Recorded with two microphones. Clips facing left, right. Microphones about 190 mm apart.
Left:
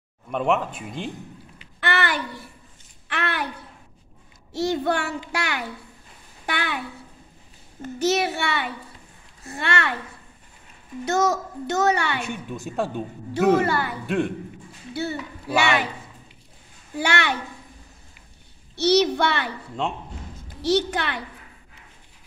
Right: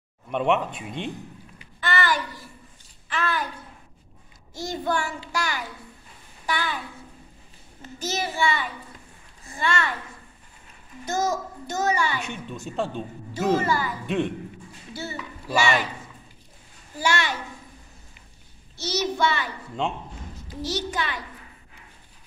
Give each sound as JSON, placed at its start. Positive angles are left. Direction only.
{"t": 0.3, "sound": "speech", "side_deg": 0}
{"t": 1.8, "sound": "a sound", "side_deg": 65}
{"t": 3.1, "sound": "a child's voice", "side_deg": 65}
{"t": 4.6, "sound": "a child's voice", "side_deg": 65}
{"t": 7.8, "sound": "a child's voice", "side_deg": 65}
{"t": 11.1, "sound": "a child's voice", "side_deg": 70}
{"t": 12.3, "sound": "a woman's voice", "side_deg": 15}
{"t": 13.3, "sound": "a child's voice", "side_deg": 65}
{"t": 14.0, "sound": "speech", "side_deg": 5}
{"t": 15.0, "sound": "a child's voice", "side_deg": 60}
{"t": 16.9, "sound": "a child's voice", "side_deg": 65}
{"t": 18.8, "sound": "a child's voice", "side_deg": 65}